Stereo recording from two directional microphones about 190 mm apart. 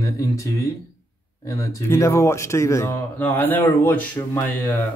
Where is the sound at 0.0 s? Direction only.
15° left (ahead or behind).